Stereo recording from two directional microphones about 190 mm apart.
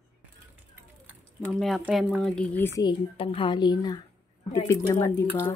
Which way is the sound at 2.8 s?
25° left (ahead or behind).